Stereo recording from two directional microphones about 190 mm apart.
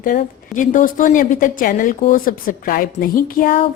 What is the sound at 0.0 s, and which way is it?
A woman's voice, 45° left (ahead or behind).